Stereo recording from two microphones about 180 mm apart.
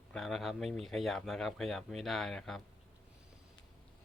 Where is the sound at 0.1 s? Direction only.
Centre (ahead or behind).